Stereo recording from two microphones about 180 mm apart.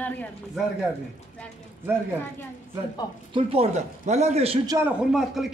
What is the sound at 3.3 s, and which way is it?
A man's voice, 35° right (ahead or behind).